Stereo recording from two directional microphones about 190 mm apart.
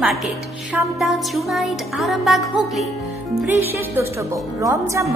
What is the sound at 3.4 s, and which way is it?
A woman's voice, 10° right (ahead or behind).